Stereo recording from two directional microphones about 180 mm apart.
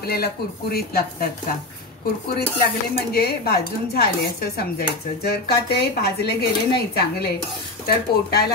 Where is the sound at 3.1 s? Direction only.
60° left (ahead or behind).